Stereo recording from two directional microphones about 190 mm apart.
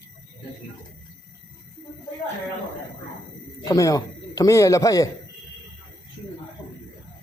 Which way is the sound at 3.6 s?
15° left (ahead or behind).